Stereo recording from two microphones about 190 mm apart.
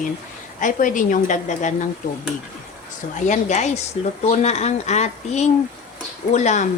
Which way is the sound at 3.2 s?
40° left (ahead or behind).